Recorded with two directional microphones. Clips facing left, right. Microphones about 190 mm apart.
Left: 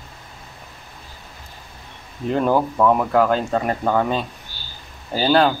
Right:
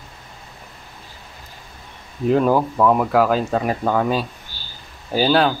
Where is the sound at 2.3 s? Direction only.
5° right (ahead or behind).